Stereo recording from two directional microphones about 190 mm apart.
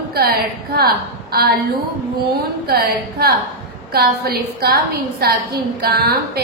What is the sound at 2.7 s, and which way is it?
A woman's voice, 55° right (ahead or behind).